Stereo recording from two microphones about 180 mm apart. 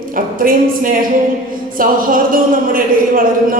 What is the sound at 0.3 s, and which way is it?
Speech, 50° right (ahead or behind).